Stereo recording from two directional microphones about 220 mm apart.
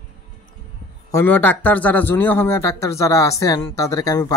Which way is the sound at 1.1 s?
10° left (ahead or behind).